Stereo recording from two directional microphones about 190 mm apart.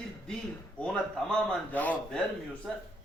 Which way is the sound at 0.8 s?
5° left (ahead or behind).